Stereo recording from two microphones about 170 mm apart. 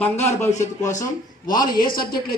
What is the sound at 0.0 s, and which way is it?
Speech, 15° left (ahead or behind).